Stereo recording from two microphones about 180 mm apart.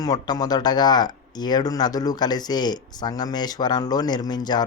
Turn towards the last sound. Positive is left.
turn(degrees=20)  # may be behind; listen again after turning